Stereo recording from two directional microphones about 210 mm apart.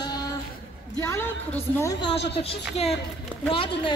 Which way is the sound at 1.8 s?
20° left (ahead or behind).